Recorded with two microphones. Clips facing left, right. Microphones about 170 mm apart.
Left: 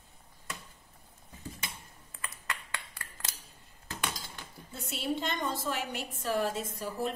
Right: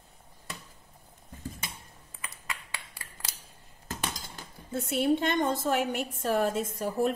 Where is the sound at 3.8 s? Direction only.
50° right (ahead or behind).